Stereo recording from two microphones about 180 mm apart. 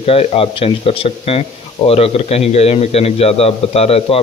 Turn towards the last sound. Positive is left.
turn(degrees=35)  # may be behind; listen again after turning